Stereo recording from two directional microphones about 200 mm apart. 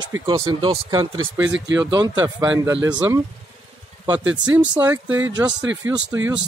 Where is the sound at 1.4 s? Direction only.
65° right (ahead or behind).